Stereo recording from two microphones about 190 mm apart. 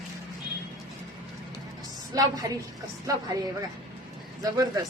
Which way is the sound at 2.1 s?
20° right (ahead or behind).